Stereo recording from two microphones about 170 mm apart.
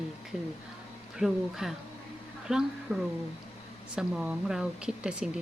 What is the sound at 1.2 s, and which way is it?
A woman's voice, centre (ahead or behind).